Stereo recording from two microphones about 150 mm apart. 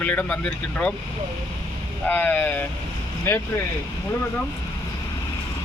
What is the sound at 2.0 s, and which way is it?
Speech, 10° left (ahead or behind).